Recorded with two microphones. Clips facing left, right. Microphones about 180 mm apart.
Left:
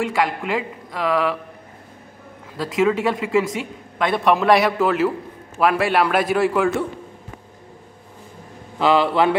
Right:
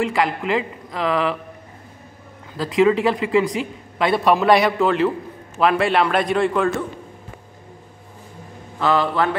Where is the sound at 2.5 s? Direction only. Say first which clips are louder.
Right 3 dB; centre (ahead or behind).